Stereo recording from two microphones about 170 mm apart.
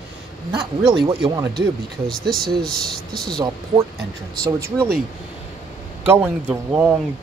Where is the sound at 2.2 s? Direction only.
65° right (ahead or behind).